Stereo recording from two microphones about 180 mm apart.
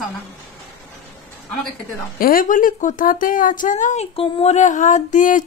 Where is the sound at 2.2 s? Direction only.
50° left (ahead or behind).